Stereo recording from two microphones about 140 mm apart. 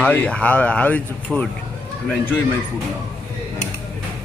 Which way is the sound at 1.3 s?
Centre (ahead or behind).